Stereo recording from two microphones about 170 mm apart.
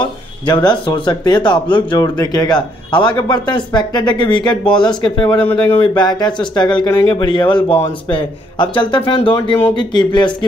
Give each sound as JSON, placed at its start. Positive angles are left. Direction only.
{"t": 0.0, "sound": "a man's voice", "side_deg": 25}